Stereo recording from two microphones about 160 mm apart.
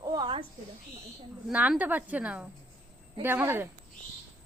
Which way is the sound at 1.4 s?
5° right (ahead or behind).